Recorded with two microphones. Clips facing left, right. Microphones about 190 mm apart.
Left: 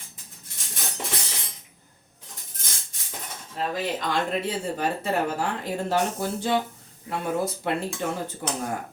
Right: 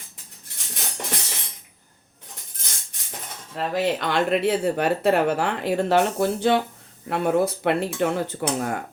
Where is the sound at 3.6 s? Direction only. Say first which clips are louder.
Right 4 dB; 70° right (ahead or behind).